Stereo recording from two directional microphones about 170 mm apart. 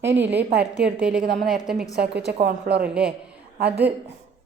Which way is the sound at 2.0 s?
80° right.